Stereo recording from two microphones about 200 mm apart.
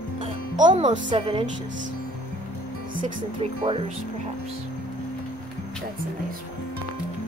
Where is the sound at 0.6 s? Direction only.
20° right (ahead or behind).